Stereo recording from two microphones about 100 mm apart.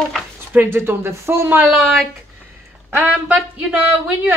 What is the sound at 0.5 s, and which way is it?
Speech, 20° right (ahead or behind).